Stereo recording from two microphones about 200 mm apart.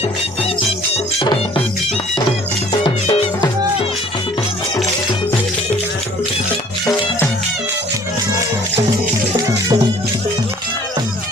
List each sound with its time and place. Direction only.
0.9 s music: 30° left (ahead or behind)
3.1 s music: 20° left (ahead or behind)